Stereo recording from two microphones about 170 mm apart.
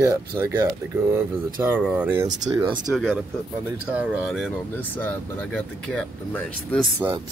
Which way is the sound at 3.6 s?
10° right (ahead or behind).